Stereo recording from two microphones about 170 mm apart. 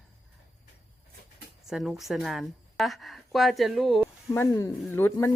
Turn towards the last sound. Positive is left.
turn(degrees=15)  # may be behind; listen again after turning